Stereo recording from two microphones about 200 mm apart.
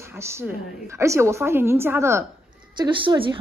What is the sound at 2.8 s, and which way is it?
Speech, 25° right (ahead or behind).